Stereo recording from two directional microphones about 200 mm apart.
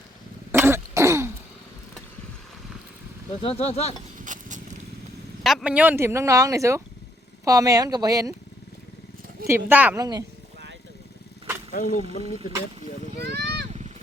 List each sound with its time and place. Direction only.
0.5 s throat clearing: 10° right (ahead or behind)
3.4 s speech: 30° left (ahead or behind)
4.2 s a sound: 40° right (ahead or behind)
5.4 s speech: centre (ahead or behind); by 8.3 s 20° right (ahead or behind)
9.6 s speech: 10° right (ahead or behind)
11.7 s speech: 40° left (ahead or behind)
13.3 s vehicle: 55° right (ahead or behind)